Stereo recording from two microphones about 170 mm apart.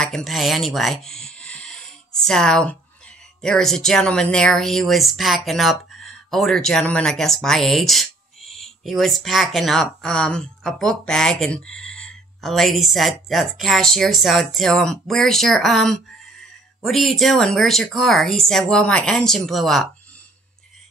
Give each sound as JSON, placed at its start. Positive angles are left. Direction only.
{"t": 0.0, "sound": "speech", "side_deg": 0}